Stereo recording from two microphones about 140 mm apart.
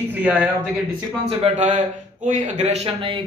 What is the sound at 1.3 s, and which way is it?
Speech, 45° right (ahead or behind).